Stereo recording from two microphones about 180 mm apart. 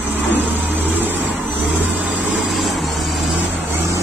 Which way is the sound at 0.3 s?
10° right (ahead or behind).